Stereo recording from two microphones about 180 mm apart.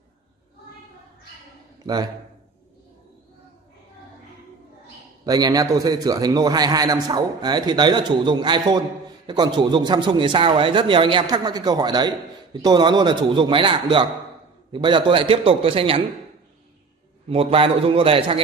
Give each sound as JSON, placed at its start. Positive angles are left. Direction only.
{"t": 5.2, "sound": "a man's voice", "side_deg": -20}
{"t": 17.3, "sound": "a man's voice", "side_deg": -30}